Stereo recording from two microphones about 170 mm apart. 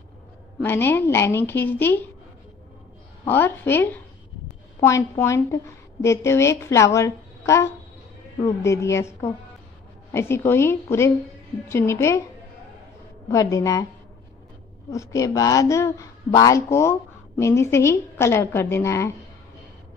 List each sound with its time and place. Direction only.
0.6 s speech: 10° left (ahead or behind)
3.3 s speech: 10° left (ahead or behind)
13.3 s a woman's voice: 20° left (ahead or behind)
14.9 s speech: 20° left (ahead or behind)